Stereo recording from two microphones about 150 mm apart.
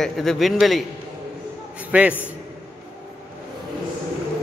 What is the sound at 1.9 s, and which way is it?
Speech, 10° right (ahead or behind).